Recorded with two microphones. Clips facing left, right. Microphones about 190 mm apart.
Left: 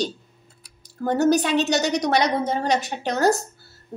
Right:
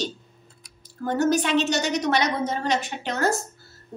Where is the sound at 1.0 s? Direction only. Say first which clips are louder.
Left 3 dB; 35° left (ahead or behind).